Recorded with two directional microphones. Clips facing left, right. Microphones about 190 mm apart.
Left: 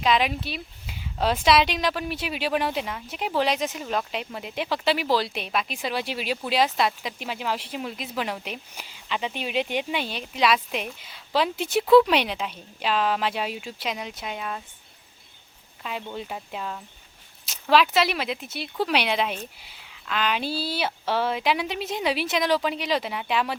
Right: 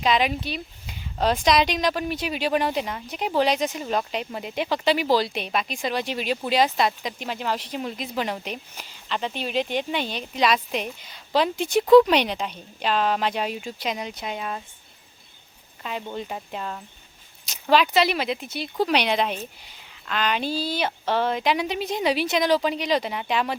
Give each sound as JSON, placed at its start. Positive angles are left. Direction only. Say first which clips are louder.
{"t": 0.0, "sound": "speech", "louder": "right 1 dB", "side_deg": 0}
{"t": 15.8, "sound": "speech", "louder": "right 2 dB", "side_deg": 0}